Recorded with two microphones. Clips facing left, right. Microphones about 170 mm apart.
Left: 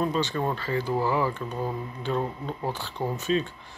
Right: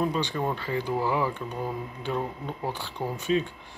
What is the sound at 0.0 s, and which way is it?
Speech, 15° right (ahead or behind).